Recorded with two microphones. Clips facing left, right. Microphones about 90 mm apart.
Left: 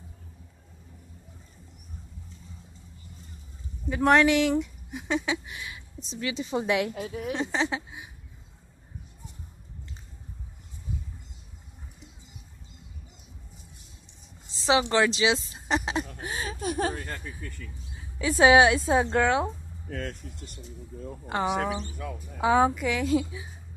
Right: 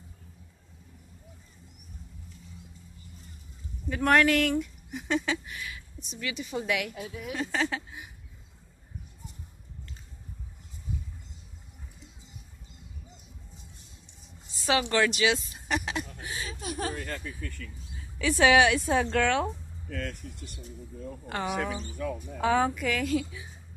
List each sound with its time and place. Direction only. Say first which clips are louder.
3.9 s speech: left 2 dB; 20° left (ahead or behind)
7.0 s speech: left 5 dB; 40° left (ahead or behind)
7.4 s speech: left 2 dB; 20° left (ahead or behind)
14.5 s speech: left 3 dB; 25° left (ahead or behind); by 16.7 s 45° left (ahead or behind)
16.7 s speech: left 1 dB; 30° left (ahead or behind)
21.3 s speech: left 4 dB; 25° left (ahead or behind)
21.9 s speech: right 4 dB; 5° left (ahead or behind)
22.5 s speech: left 4 dB; 20° left (ahead or behind)